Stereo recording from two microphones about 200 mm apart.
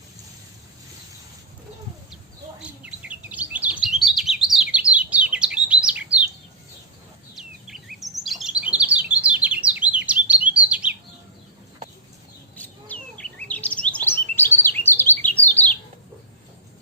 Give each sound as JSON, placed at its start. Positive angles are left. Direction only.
{"t": 2.8, "sound": "chirp", "side_deg": -5}
{"t": 7.3, "sound": "chirp", "side_deg": 0}
{"t": 12.5, "sound": "chirp", "side_deg": 10}